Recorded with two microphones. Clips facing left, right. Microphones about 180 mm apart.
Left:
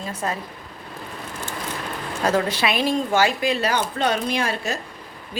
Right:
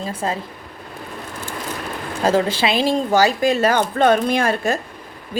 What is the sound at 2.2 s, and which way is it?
Speech, 30° right (ahead or behind).